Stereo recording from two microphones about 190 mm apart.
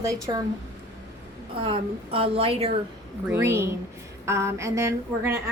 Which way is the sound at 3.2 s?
15° right (ahead or behind).